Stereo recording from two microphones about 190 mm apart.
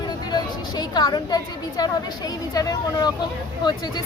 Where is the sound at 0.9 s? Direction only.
20° left (ahead or behind).